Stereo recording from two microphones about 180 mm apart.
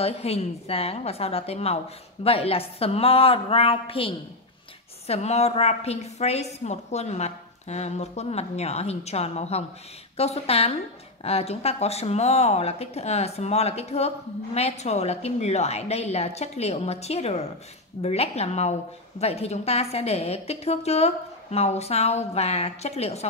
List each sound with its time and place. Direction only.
0.0 s speech: 35° left (ahead or behind)